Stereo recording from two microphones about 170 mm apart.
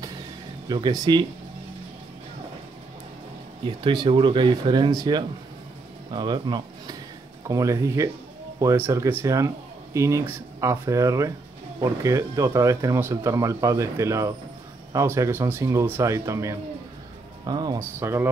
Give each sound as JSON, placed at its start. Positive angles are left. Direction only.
{"t": 0.7, "sound": "speech", "side_deg": -25}
{"t": 3.6, "sound": "speech", "side_deg": -30}